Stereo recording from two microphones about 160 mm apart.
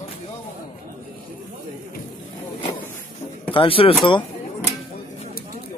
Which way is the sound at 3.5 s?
35° left (ahead or behind).